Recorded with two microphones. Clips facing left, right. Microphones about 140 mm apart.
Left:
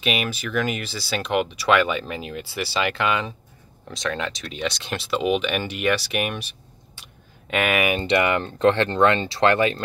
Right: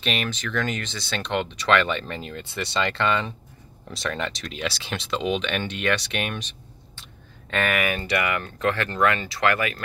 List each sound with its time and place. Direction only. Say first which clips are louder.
0.0 s speech: left 2 dB; 5° left (ahead or behind)
7.0 s a sound: right 1 dB; 15° left (ahead or behind)
8.0 s speech: left 5 dB; 25° left (ahead or behind)